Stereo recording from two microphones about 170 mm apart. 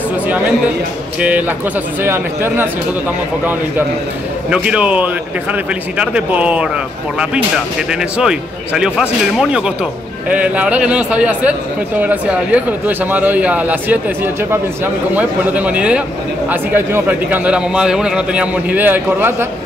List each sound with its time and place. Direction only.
2.0 s a man's voice: 15° right (ahead or behind)
4.5 s a man's voice: 5° right (ahead or behind)
7.9 s a man's voice: 5° right (ahead or behind)